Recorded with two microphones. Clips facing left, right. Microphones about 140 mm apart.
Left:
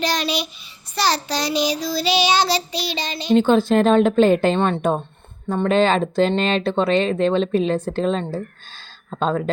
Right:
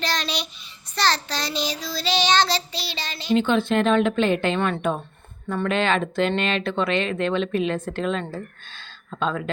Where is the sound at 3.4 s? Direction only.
40° left (ahead or behind).